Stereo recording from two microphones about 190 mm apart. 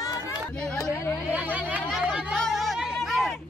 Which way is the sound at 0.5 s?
5° left (ahead or behind).